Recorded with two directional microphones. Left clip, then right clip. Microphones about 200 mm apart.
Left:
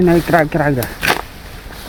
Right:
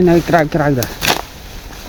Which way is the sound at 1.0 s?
20° right (ahead or behind).